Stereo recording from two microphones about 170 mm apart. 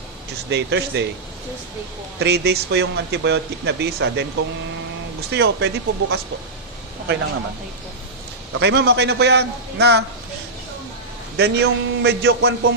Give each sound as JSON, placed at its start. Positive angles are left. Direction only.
{"t": 0.5, "sound": "speech", "side_deg": -90}
{"t": 2.1, "sound": "speech", "side_deg": -75}
{"t": 5.3, "sound": "speech", "side_deg": -85}
{"t": 8.5, "sound": "speech", "side_deg": -90}
{"t": 11.3, "sound": "a man's voice", "side_deg": -80}